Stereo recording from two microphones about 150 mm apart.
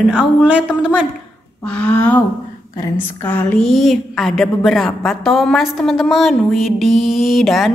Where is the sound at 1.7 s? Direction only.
10° left (ahead or behind).